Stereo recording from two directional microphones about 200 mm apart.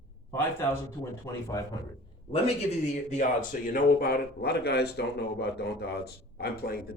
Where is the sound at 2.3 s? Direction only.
35° left (ahead or behind); by 6.9 s 50° left (ahead or behind).